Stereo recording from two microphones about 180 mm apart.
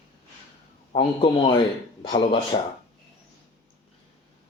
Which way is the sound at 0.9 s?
25° left (ahead or behind).